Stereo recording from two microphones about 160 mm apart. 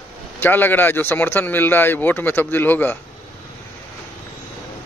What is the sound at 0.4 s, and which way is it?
Speech, 10° left (ahead or behind).